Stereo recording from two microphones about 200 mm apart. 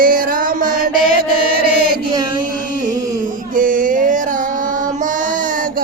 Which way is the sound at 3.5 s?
45° right (ahead or behind).